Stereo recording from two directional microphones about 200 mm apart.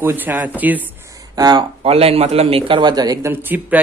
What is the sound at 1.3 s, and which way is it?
Speech, 20° right (ahead or behind).